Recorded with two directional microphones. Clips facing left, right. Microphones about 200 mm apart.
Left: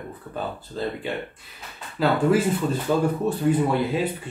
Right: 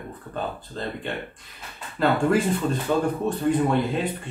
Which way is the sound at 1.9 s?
5° left (ahead or behind).